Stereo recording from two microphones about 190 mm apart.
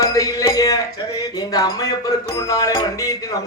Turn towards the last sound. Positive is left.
turn(degrees=15)  # may be behind; listen again after turning